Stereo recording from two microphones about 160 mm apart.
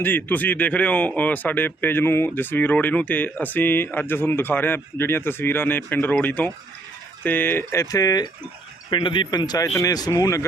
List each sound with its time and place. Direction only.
0.0 s speech: 10° left (ahead or behind)